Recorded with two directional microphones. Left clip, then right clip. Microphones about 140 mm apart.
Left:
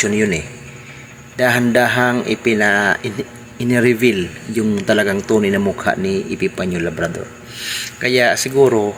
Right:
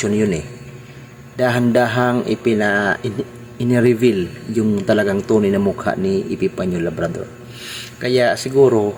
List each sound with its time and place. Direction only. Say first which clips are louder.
0.0 s speech: left 2 dB; 15° right (ahead or behind)